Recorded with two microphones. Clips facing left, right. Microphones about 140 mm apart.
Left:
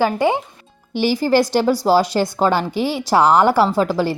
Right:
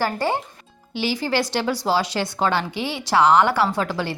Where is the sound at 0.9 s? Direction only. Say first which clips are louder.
Left 7 dB; 45° left (ahead or behind).